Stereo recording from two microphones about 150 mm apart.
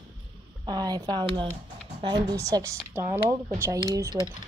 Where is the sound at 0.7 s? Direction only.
25° right (ahead or behind).